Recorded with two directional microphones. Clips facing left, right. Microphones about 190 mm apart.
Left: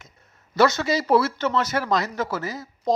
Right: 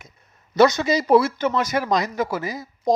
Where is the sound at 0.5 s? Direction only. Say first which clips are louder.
Right 3 dB; 15° right (ahead or behind).